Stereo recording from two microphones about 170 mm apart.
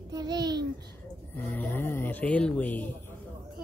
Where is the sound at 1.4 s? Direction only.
10° left (ahead or behind).